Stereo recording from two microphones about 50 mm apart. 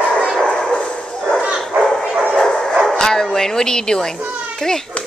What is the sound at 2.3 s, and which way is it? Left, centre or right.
Bow-wow, centre.